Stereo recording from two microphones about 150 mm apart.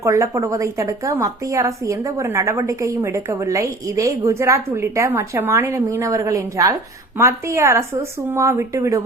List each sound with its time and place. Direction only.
0.0 s a woman's voice: 20° right (ahead or behind)